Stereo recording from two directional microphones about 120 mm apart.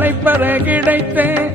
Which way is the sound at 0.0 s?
15° right (ahead or behind).